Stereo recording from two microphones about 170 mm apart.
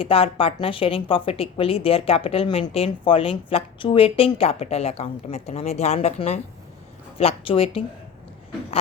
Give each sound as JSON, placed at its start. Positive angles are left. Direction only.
{"t": 0.0, "sound": "a woman's voice", "side_deg": 35}